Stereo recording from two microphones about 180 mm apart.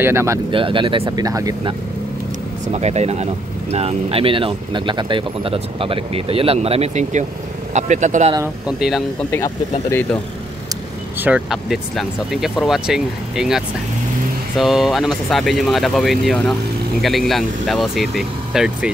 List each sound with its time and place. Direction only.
0.0 s speech: 15° right (ahead or behind)
0.5 s speech: 30° right (ahead or behind)
1.0 s speech: 20° right (ahead or behind)
2.7 s speech: 35° right (ahead or behind)
8.6 s speech: 5° right (ahead or behind)
9.3 s speech: 15° left (ahead or behind)
11.1 s speech: 5° right (ahead or behind)